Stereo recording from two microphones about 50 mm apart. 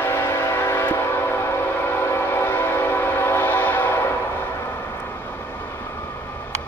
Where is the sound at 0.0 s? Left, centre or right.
Left.